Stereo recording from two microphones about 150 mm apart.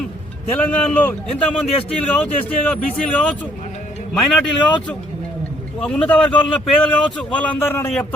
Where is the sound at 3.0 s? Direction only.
10° left (ahead or behind).